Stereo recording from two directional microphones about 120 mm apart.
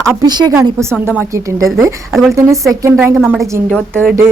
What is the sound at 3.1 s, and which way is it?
Speech, centre (ahead or behind).